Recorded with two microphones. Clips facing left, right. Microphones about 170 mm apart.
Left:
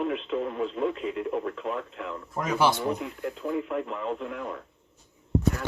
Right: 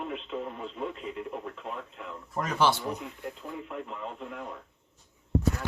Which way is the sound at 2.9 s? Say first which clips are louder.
Left 6 dB; 90° left.